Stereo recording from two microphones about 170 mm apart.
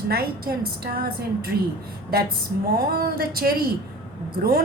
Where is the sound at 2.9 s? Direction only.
65° right (ahead or behind).